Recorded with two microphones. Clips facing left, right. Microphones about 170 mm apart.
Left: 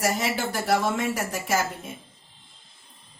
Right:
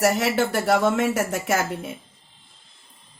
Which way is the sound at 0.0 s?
70° right (ahead or behind).